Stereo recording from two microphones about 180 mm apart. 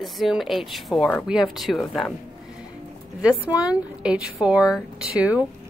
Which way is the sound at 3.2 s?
5° right (ahead or behind).